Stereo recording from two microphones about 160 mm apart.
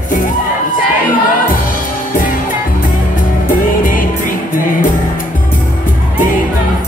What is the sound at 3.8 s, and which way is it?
Music, 60° left (ahead or behind).